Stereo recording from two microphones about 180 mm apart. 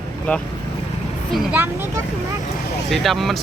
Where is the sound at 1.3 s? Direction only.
5° right (ahead or behind).